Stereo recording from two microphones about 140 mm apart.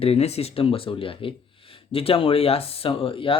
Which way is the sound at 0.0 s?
45° left (ahead or behind).